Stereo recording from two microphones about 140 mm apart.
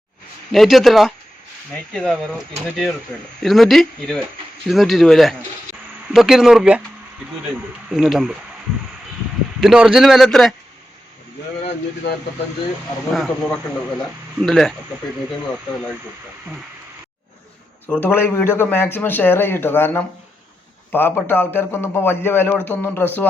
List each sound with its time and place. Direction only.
0.5 s a man's voice: centre (ahead or behind)
9.6 s a man's voice: 5° right (ahead or behind)
13.1 s a man's voice: centre (ahead or behind)
17.8 s speech: 15° left (ahead or behind)
21.2 s speech: 15° left (ahead or behind)